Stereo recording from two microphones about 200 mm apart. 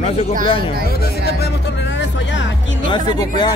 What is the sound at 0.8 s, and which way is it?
Speech, 50° left (ahead or behind).